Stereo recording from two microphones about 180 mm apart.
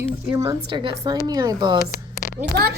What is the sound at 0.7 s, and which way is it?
Speech, 25° right (ahead or behind).